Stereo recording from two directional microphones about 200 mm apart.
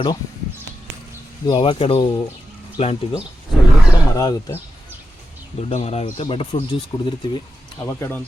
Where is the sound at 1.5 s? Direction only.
25° left (ahead or behind).